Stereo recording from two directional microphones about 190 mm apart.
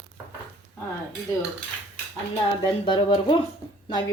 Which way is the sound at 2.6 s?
25° left (ahead or behind).